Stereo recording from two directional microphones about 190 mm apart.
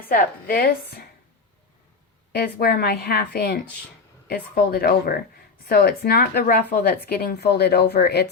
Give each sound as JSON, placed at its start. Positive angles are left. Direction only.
{"t": 0.0, "sound": "speech", "side_deg": 50}
{"t": 2.3, "sound": "speech", "side_deg": 55}